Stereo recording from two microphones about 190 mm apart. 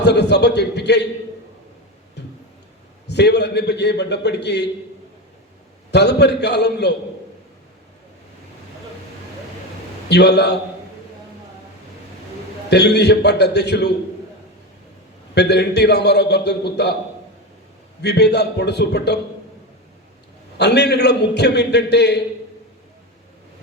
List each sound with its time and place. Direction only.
0.0 s a man's voice: 60° left (ahead or behind)
3.1 s a man's voice: 60° left (ahead or behind)
5.9 s a man's voice: 60° left (ahead or behind)
10.1 s a man's voice: 60° left (ahead or behind)
12.7 s a man's voice: 60° left (ahead or behind)
15.4 s a man's voice: 60° left (ahead or behind)
18.0 s a man's voice: 60° left (ahead or behind)
20.6 s a man's voice: 60° left (ahead or behind)